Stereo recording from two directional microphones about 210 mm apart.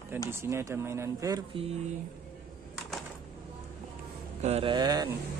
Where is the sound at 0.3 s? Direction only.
10° right (ahead or behind).